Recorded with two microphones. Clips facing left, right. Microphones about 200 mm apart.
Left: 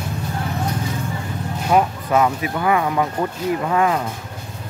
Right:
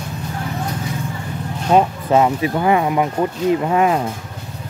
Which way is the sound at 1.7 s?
25° right (ahead or behind).